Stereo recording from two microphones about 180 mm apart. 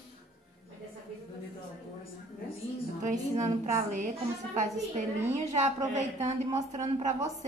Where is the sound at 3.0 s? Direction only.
40° right (ahead or behind).